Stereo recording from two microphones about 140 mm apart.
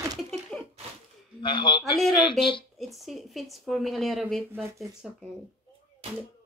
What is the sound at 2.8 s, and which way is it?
Speech, centre (ahead or behind).